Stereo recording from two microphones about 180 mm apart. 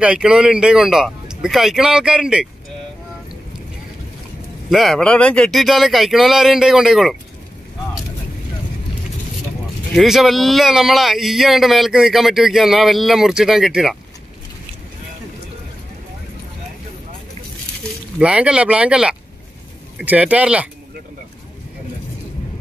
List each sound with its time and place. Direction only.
0.0 s speech: 5° right (ahead or behind)
4.6 s speech: centre (ahead or behind)
9.9 s speech: centre (ahead or behind)
18.2 s speech: 5° right (ahead or behind)